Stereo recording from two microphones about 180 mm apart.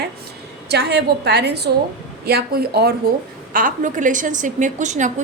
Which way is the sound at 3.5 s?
50° right (ahead or behind).